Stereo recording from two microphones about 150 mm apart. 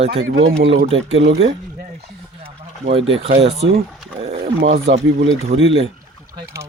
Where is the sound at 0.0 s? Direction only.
45° right (ahead or behind).